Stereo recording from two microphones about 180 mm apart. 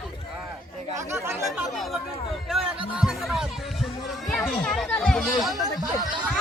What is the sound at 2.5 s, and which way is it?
Music, centre (ahead or behind).